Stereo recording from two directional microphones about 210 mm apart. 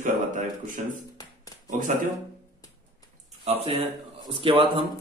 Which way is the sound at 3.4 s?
30° right (ahead or behind).